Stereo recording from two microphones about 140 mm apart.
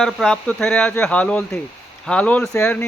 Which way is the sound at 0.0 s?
5° left (ahead or behind).